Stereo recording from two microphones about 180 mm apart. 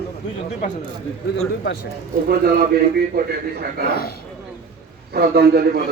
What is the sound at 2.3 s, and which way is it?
A man's voice, 60° right (ahead or behind).